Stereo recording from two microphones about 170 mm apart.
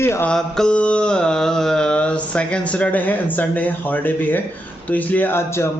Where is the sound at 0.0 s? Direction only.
15° left (ahead or behind).